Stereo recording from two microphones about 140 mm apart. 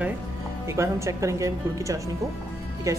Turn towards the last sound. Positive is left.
turn(degrees=-20)  # may be behind; listen again after turning